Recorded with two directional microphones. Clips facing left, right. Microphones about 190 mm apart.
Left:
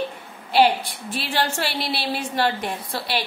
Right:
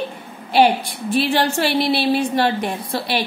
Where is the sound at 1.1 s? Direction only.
20° right (ahead or behind).